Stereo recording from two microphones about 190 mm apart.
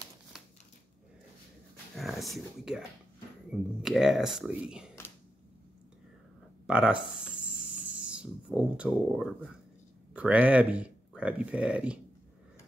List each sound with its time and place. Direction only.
2.0 s speech: centre (ahead or behind)
3.8 s speech: centre (ahead or behind)
6.7 s a sound: 5° right (ahead or behind)
10.1 s speech: 5° right (ahead or behind)